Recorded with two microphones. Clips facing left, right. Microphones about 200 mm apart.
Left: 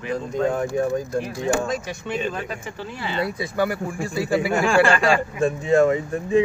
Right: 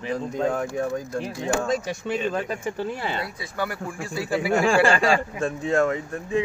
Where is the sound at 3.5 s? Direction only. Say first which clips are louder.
Left 4 dB; 5° left (ahead or behind).